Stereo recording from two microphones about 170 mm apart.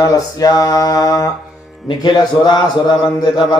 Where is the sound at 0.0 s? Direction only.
20° left (ahead or behind).